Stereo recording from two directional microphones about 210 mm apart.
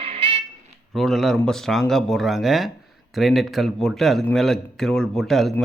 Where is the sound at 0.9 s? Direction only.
Centre (ahead or behind).